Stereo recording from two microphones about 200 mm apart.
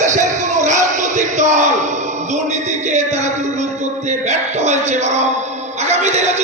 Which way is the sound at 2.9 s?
35° right (ahead or behind).